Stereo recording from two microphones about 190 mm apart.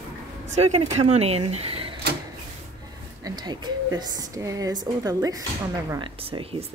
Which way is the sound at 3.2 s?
20° right (ahead or behind).